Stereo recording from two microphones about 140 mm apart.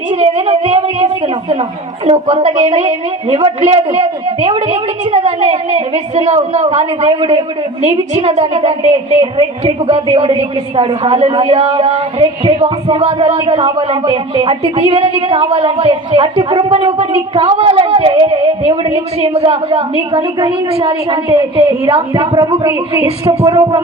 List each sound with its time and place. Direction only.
0.1 s a sound: 50° right (ahead or behind)
2.0 s a woman's voice: 50° right (ahead or behind)
21.2 s a woman's voice: 25° right (ahead or behind)